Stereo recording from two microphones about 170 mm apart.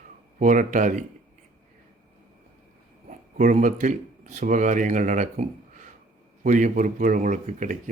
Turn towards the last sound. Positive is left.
turn(degrees=-45)  # may be behind; listen again after turning